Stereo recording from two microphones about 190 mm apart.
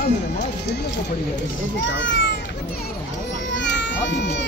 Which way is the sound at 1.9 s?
75° left (ahead or behind).